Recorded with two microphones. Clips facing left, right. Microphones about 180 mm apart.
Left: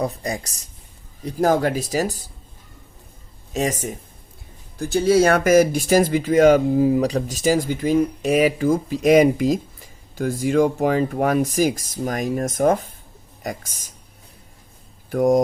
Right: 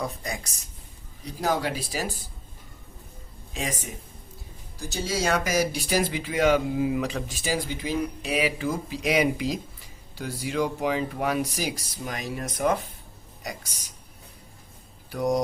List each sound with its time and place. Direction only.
0.0 s speech: 35° left (ahead or behind)
1.2 s speech: 50° left (ahead or behind)
3.5 s speech: 45° left (ahead or behind)
4.8 s speech: 55° left (ahead or behind)
15.1 s speech: 50° left (ahead or behind)